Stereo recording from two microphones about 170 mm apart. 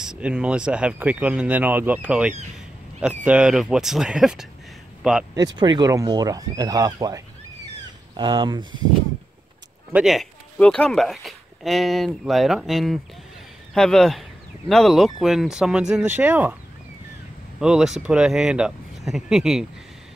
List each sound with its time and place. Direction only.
0.0 s speech: 5° right (ahead or behind)
5.6 s speech: 25° right (ahead or behind)
9.9 s speech: centre (ahead or behind)
17.6 s speech: 5° right (ahead or behind)